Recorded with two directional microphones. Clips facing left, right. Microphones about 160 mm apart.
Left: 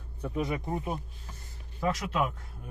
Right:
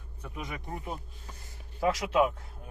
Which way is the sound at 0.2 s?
30° left (ahead or behind).